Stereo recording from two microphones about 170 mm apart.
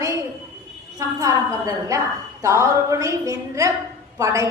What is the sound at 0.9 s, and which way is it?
A woman's voice, 20° right (ahead or behind).